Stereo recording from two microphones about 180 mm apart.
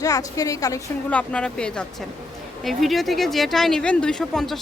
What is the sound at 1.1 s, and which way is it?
Speech, 5° left (ahead or behind).